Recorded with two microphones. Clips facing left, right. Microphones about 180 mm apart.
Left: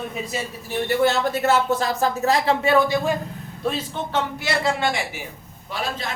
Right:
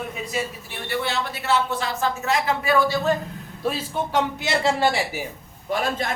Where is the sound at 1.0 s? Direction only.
45° left (ahead or behind); by 3.2 s 15° left (ahead or behind).